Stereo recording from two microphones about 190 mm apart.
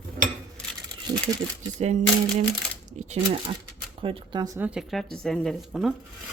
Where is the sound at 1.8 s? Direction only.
35° right (ahead or behind); by 4.7 s 20° right (ahead or behind).